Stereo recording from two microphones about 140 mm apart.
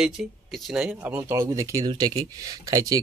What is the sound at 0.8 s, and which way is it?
Speech, 10° right (ahead or behind).